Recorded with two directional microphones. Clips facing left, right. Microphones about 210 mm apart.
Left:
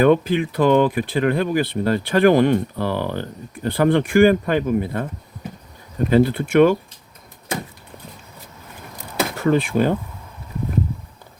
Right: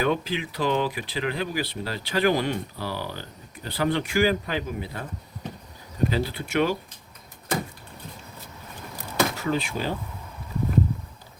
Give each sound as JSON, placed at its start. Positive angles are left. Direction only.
{"t": 0.0, "sound": "speech", "side_deg": 55}
{"t": 6.1, "sound": "speech", "side_deg": 55}
{"t": 9.3, "sound": "speech", "side_deg": 55}